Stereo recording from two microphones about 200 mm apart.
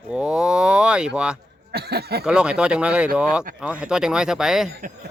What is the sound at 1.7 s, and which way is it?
Speech, 55° right (ahead or behind).